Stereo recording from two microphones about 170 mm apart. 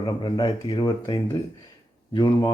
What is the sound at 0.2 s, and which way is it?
Speech, 25° left (ahead or behind).